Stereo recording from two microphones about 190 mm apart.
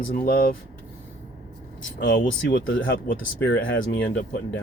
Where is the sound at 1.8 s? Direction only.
75° left (ahead or behind).